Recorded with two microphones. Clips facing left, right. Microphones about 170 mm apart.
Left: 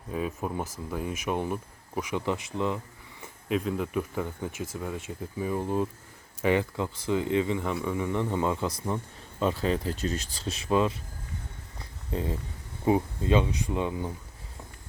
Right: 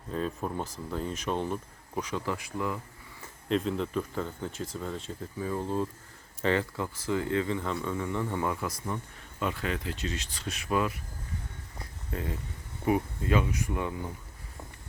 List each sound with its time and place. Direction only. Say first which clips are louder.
0.1 s speech: left 1 dB; 10° left (ahead or behind)
3.5 s speech: even; 5° left (ahead or behind); by 8.7 s 20° left (ahead or behind)
9.4 s speech: left 5 dB; 30° left (ahead or behind)
10.5 s speech: left 4 dB; 25° left (ahead or behind)
12.1 s speech: left 4 dB; 25° left (ahead or behind)